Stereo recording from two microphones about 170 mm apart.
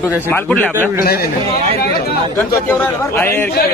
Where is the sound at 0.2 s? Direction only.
10° left (ahead or behind).